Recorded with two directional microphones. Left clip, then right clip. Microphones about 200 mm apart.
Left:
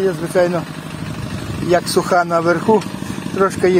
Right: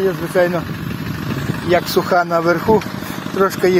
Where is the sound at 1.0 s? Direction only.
45° left (ahead or behind).